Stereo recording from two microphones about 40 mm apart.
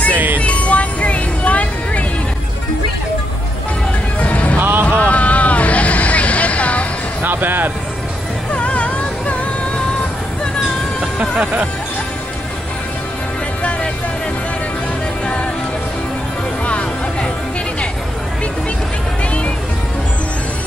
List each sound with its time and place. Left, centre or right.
0.1 s music: right
0.4 s music: left
4.2 s music: left
4.6 s vehicle: right
4.8 s vehicle: left
7.2 s a sound: right
8.5 s music: left
16.6 s music: left